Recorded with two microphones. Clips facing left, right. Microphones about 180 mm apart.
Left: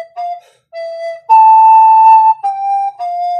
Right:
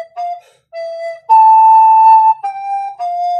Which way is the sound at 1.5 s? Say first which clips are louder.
Left 1 dB; 20° left (ahead or behind).